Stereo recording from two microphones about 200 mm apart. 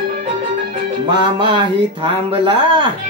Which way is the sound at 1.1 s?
25° right (ahead or behind).